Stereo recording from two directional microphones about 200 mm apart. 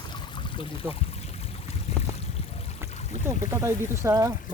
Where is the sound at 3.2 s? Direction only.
15° right (ahead or behind).